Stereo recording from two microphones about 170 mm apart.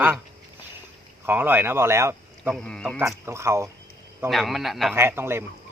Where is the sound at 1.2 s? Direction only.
10° right (ahead or behind).